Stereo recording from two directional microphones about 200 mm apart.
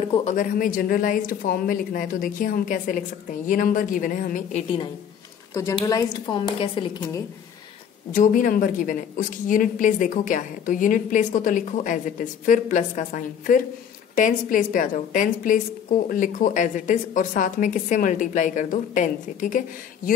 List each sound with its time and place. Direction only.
0.0 s a woman's voice: 30° left (ahead or behind)
5.5 s a woman's voice: 15° left (ahead or behind)
8.1 s a woman's voice: 40° left (ahead or behind)